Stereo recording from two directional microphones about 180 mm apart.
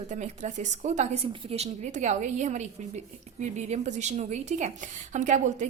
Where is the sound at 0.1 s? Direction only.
40° right (ahead or behind).